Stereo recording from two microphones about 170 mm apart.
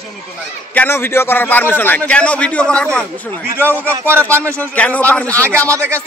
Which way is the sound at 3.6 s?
15° right (ahead or behind).